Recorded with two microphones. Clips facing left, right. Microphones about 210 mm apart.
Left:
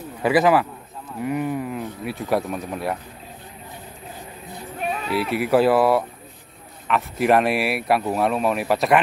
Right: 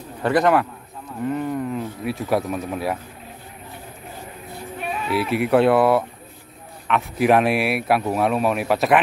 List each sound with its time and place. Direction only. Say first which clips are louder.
0.2 s speech: even; 5° left (ahead or behind)
5.1 s speech: right 1 dB; centre (ahead or behind)